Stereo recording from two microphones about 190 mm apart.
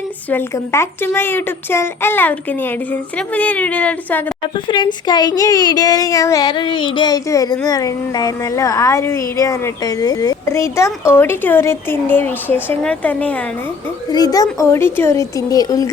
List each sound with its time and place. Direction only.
0.3 s speech: 10° left (ahead or behind)
4.5 s speech: 25° left (ahead or behind); by 13.4 s 10° left (ahead or behind)
14.1 s speech: 20° left (ahead or behind)